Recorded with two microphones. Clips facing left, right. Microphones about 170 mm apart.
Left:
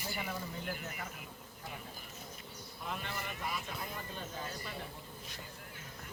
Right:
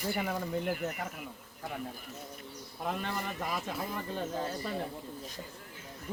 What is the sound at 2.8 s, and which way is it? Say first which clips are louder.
Speech: right 7 dB; 50° right (ahead or behind).